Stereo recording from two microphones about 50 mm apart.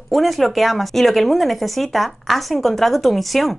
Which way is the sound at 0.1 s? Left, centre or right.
Centre.